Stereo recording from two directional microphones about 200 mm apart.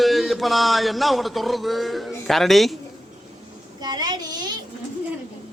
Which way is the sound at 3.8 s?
20° right (ahead or behind).